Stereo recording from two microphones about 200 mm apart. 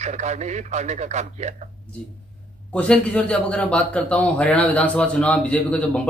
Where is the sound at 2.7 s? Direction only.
5° left (ahead or behind).